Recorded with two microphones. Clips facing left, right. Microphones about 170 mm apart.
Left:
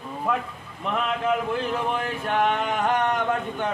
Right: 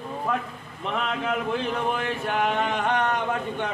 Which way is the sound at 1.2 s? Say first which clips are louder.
Left 2 dB; centre (ahead or behind).